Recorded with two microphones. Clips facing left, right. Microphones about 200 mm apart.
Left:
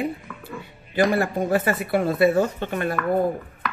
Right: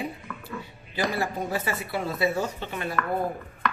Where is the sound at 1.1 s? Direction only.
55° left (ahead or behind).